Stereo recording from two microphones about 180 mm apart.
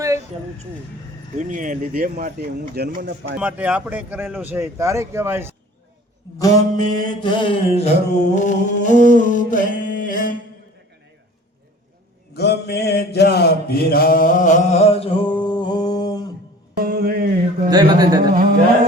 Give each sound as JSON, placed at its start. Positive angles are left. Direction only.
{"t": 1.4, "sound": "speech", "side_deg": -45}
{"t": 3.3, "sound": "speech", "side_deg": -5}
{"t": 6.4, "sound": "mantra", "side_deg": 20}
{"t": 12.3, "sound": "mantra", "side_deg": 65}
{"t": 16.7, "sound": "music", "side_deg": -55}
{"t": 17.7, "sound": "speech", "side_deg": -20}
{"t": 18.3, "sound": "carnatic music", "side_deg": -55}